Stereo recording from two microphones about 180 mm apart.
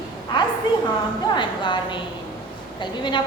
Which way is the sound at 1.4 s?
25° left (ahead or behind).